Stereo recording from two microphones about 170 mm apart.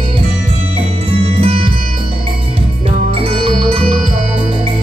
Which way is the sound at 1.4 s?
35° right (ahead or behind).